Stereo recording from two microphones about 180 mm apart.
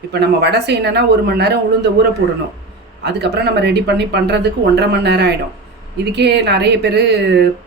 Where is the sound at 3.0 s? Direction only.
70° right (ahead or behind).